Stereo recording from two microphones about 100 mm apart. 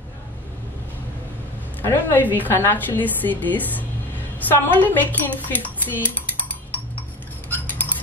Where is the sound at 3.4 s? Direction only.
15° left (ahead or behind).